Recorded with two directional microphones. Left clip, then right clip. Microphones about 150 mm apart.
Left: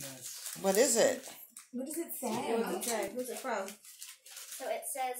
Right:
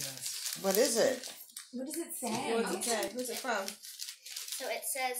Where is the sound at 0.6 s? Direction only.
10° left (ahead or behind).